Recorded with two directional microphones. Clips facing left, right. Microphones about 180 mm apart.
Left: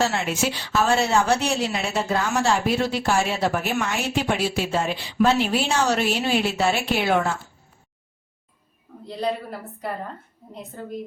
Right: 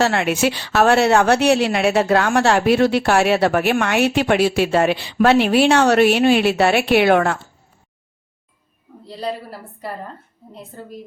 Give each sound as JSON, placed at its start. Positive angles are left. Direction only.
{"t": 0.0, "sound": "a woman's voice", "side_deg": -70}
{"t": 9.0, "sound": "a woman's voice", "side_deg": 0}